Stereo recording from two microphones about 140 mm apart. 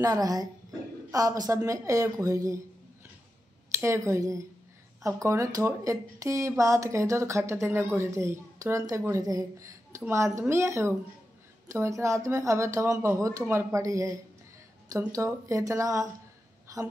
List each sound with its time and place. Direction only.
0.0 s a woman's voice: 25° right (ahead or behind)
3.7 s a woman's voice: 20° right (ahead or behind)
16.7 s a sound: 25° right (ahead or behind)